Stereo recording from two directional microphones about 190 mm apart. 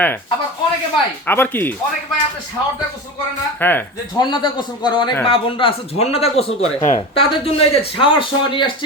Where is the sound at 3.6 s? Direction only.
10° left (ahead or behind).